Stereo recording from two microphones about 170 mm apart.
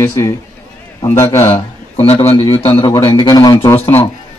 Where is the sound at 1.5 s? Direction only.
30° left (ahead or behind).